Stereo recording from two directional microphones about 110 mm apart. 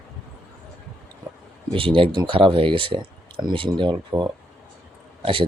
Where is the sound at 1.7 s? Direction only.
55° right (ahead or behind).